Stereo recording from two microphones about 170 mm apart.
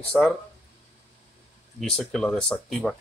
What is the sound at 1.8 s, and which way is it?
Speech, 5° left (ahead or behind).